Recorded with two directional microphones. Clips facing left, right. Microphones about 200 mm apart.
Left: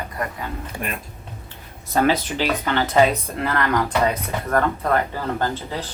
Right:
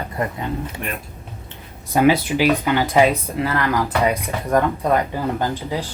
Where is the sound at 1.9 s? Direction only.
10° right (ahead or behind).